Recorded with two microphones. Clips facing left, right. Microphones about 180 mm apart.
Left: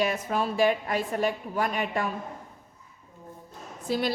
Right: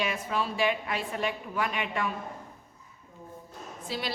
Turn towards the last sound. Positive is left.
turn(degrees=45)  # may be behind; listen again after turning